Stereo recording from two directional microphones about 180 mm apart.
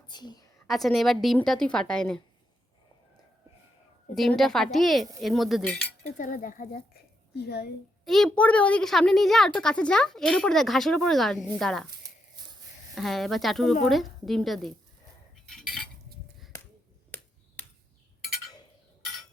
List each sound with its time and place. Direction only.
0.1 s a woman's voice: 25° left (ahead or behind)
0.7 s a woman's voice: centre (ahead or behind)
4.1 s a woman's voice: centre (ahead or behind)
6.1 s a woman's voice: 50° left (ahead or behind); by 7.7 s 65° left (ahead or behind)
8.0 s a woman's voice: centre (ahead or behind)
12.9 s a woman's voice: centre (ahead or behind)
15.4 s cutlery: 5° left (ahead or behind)